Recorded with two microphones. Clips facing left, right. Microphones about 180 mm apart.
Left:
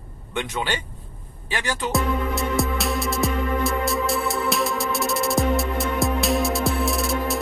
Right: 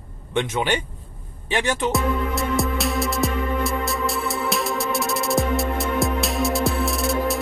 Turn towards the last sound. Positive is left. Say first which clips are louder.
# right 1 dB
turn(degrees=0)  # may be behind; listen again after turning